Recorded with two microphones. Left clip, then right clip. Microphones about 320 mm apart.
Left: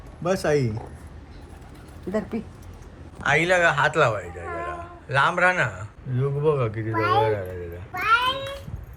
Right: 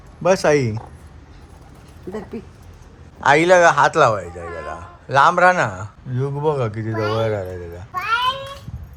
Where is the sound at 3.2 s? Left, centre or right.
Centre.